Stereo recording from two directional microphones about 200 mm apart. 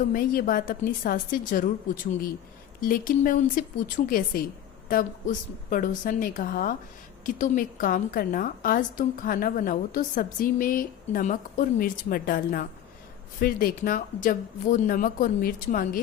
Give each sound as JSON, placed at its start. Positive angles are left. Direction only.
{"t": 0.0, "sound": "a woman's voice", "side_deg": 45}
{"t": 2.8, "sound": "a woman's voice", "side_deg": 45}